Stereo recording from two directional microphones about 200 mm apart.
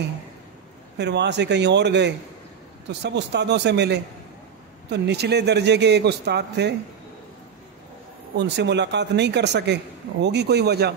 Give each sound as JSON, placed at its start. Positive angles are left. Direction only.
{"t": 0.9, "sound": "a man's voice", "side_deg": -60}
{"t": 8.4, "sound": "a man's voice", "side_deg": -60}